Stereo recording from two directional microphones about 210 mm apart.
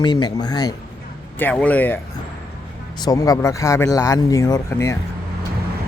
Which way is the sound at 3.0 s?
15° left (ahead or behind).